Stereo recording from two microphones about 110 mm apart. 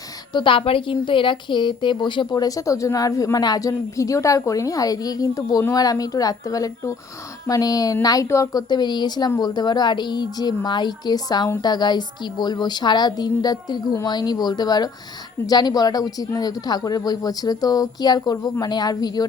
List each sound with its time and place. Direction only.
0.3 s a woman's voice: 50° left (ahead or behind); by 8.6 s 30° left (ahead or behind)
8.7 s a woman's voice: 40° left (ahead or behind)